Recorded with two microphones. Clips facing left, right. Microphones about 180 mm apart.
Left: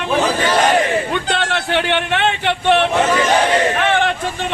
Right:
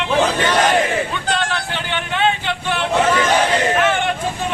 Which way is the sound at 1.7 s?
70° left (ahead or behind).